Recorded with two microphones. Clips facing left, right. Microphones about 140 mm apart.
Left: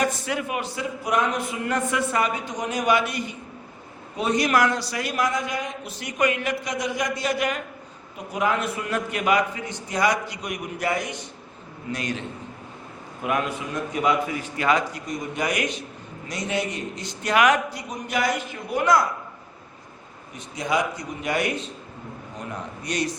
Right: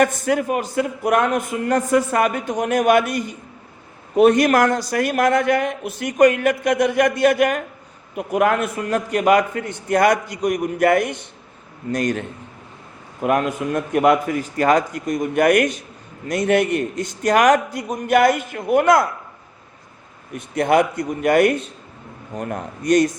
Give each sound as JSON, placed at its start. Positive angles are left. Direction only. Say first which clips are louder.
{"t": 0.0, "sound": "a man's voice", "louder": "right 7 dB", "side_deg": -50}
{"t": 11.9, "sound": "a man's voice", "louder": "right 8 dB", "side_deg": -45}
{"t": 13.2, "sound": "a man's voice", "louder": "right 7 dB", "side_deg": -50}
{"t": 20.3, "sound": "a man's voice", "louder": "right 8 dB", "side_deg": -60}